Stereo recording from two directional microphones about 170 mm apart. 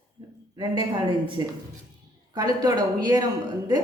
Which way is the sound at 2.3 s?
25° right (ahead or behind).